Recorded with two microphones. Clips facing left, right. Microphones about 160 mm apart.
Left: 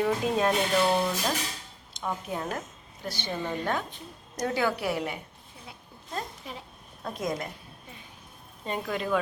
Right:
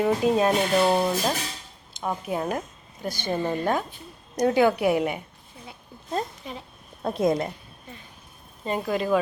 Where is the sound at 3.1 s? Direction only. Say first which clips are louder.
Right 6 dB; 50° right (ahead or behind).